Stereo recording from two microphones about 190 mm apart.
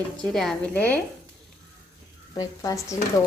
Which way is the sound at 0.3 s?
5° left (ahead or behind).